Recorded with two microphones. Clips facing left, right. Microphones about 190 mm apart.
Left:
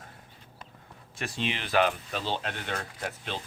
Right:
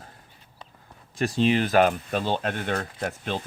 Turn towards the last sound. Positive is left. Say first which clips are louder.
# right 6 dB
turn(degrees=-45)  # may be behind; listen again after turning